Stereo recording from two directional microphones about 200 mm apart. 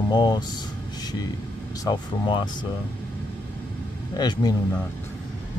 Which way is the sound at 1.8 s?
25° left (ahead or behind).